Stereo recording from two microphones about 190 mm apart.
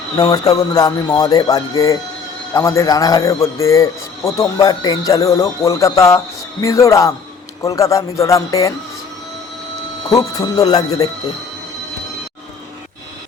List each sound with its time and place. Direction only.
0.2 s a man's voice: 20° left (ahead or behind)
10.1 s speech: 20° left (ahead or behind)